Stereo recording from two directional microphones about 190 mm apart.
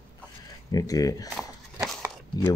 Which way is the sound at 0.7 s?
20° left (ahead or behind).